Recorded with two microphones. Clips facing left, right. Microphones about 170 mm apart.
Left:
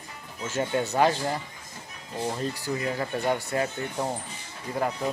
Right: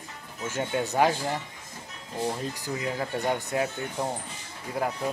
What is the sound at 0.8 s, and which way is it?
Speech, 15° right (ahead or behind).